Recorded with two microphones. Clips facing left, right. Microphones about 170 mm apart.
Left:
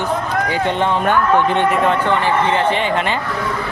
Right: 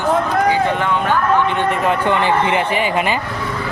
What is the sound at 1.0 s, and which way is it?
Speech, 45° left (ahead or behind).